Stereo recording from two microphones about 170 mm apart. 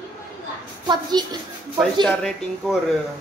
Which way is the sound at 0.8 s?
25° right (ahead or behind).